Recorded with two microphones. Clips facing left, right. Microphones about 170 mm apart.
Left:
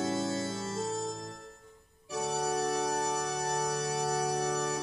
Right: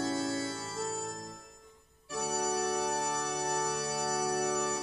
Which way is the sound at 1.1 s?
Centre (ahead or behind).